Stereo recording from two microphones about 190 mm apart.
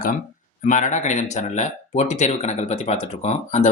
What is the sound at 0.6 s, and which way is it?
Speech, 40° left (ahead or behind).